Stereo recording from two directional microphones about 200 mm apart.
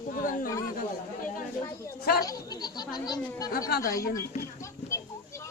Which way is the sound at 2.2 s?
20° left (ahead or behind).